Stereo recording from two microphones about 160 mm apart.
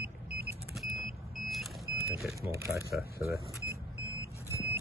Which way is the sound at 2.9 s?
75° left (ahead or behind).